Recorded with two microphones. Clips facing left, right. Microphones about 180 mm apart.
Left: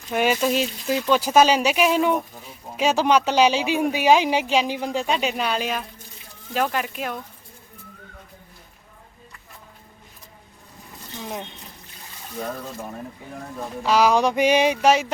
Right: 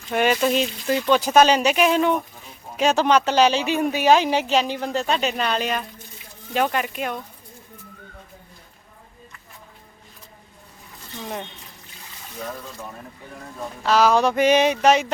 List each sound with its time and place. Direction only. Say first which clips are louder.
0.1 s speech: right 1 dB; 5° left (ahead or behind)
11.2 s speech: right 1 dB; 5° left (ahead or behind)
13.8 s speech: right 1 dB; 10° left (ahead or behind)